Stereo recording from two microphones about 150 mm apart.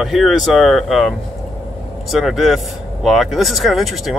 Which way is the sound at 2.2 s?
Centre (ahead or behind).